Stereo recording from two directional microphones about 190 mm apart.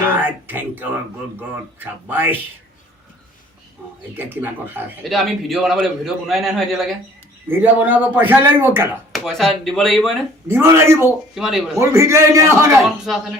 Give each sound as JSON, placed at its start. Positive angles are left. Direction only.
{"t": 0.2, "sound": "speech", "side_deg": -10}
{"t": 4.2, "sound": "speech", "side_deg": -10}
{"t": 5.0, "sound": "speech", "side_deg": 0}
{"t": 9.1, "sound": "speech", "side_deg": 0}
{"t": 10.5, "sound": "speech", "side_deg": -15}
{"t": 11.3, "sound": "speech", "side_deg": 0}
{"t": 11.8, "sound": "speech", "side_deg": -15}
{"t": 13.1, "sound": "speech", "side_deg": 0}